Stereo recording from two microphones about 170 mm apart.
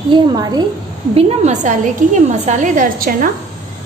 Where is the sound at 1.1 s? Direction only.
40° right (ahead or behind).